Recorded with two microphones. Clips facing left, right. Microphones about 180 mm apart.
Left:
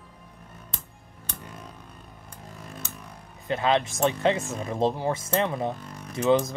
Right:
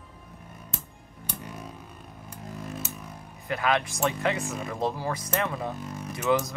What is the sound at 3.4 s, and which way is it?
Speech, 25° left (ahead or behind).